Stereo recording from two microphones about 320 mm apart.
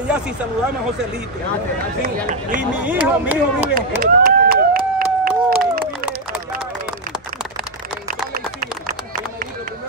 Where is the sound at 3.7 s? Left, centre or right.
Right.